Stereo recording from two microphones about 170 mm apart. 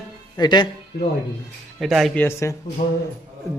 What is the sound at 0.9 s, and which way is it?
Speech, 65° left (ahead or behind).